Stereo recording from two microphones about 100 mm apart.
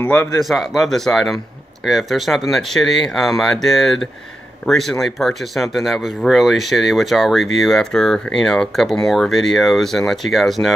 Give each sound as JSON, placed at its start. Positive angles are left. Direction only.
{"t": 0.0, "sound": "speech", "side_deg": 20}
{"t": 0.4, "sound": "speech", "side_deg": 0}